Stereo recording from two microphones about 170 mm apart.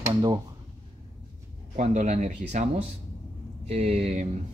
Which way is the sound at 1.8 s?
45° right (ahead or behind).